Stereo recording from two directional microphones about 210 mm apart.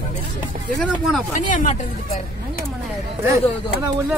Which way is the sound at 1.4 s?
35° left (ahead or behind).